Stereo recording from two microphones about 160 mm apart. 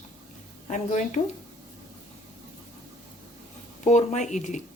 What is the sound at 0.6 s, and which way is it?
Speech, 50° left (ahead or behind).